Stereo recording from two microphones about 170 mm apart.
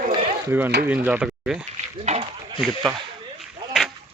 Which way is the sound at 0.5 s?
10° right (ahead or behind).